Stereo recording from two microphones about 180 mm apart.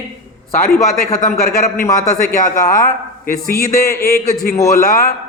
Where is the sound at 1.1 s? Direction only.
50° left (ahead or behind).